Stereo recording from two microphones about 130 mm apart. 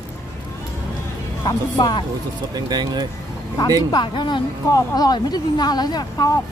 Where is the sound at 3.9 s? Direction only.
35° left (ahead or behind).